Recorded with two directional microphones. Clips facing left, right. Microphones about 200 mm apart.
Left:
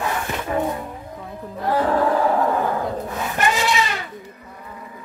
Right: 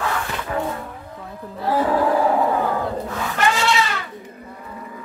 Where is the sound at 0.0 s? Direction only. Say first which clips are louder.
Even; 20° left (ahead or behind).